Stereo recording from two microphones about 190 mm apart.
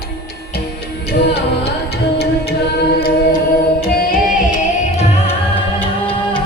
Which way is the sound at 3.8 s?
50° left (ahead or behind).